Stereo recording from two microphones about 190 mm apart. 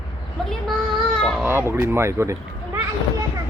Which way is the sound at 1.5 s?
10° right (ahead or behind).